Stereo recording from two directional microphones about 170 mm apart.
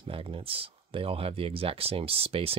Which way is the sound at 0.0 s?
30° right (ahead or behind).